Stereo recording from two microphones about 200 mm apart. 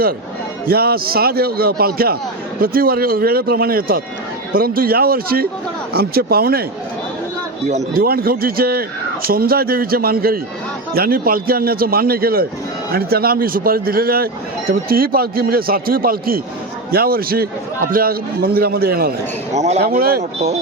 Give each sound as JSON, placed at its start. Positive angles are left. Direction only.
{"t": 0.7, "sound": "a man's voice", "side_deg": -50}
{"t": 7.9, "sound": "a man's voice", "side_deg": -50}
{"t": 19.5, "sound": "speech", "side_deg": -35}
{"t": 19.8, "sound": "a man's voice", "side_deg": -50}